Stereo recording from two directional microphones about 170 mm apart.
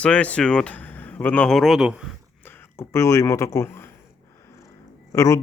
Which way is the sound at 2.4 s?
15° left (ahead or behind).